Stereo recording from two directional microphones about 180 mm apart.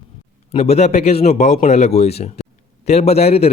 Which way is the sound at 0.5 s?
35° left (ahead or behind).